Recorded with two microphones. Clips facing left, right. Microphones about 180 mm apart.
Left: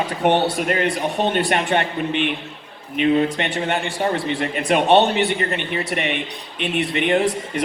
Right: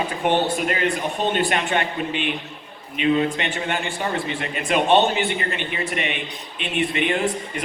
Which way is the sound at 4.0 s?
50° left (ahead or behind).